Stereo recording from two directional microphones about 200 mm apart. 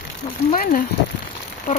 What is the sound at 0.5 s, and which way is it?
Speech, 45° left (ahead or behind).